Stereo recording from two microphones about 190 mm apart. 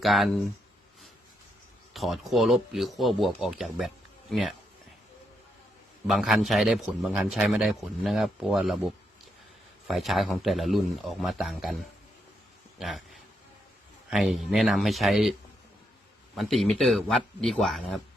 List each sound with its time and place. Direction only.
0.0 s a man's voice: centre (ahead or behind)
1.9 s a man's voice: centre (ahead or behind)
6.1 s a man's voice: centre (ahead or behind)
12.8 s a man's voice: centre (ahead or behind)